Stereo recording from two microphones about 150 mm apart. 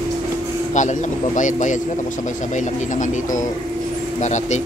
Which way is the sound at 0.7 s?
55° left (ahead or behind).